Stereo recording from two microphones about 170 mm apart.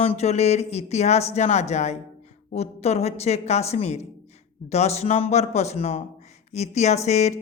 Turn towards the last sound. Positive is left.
turn(degrees=40)  # may be behind; listen again after turning